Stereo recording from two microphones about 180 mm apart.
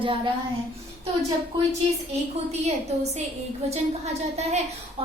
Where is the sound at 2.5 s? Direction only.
35° right (ahead or behind).